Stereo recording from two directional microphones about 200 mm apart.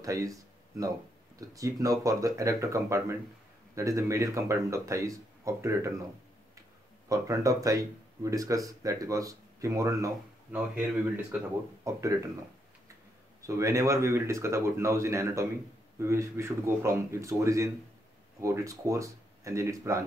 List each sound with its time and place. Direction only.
0.0 s speech: 15° right (ahead or behind)
7.1 s speech: 15° right (ahead or behind)
13.4 s speech: 15° right (ahead or behind)